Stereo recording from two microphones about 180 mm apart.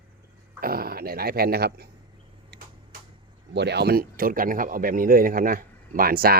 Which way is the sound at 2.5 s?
70° right (ahead or behind).